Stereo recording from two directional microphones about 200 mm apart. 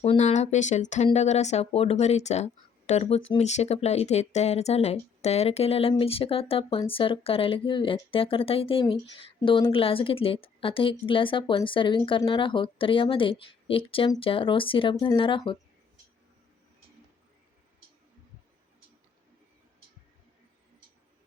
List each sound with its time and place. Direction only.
0.0 s a woman's voice: 30° left (ahead or behind)